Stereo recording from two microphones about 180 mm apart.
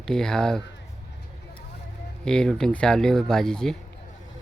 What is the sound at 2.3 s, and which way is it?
Speech, 5° left (ahead or behind).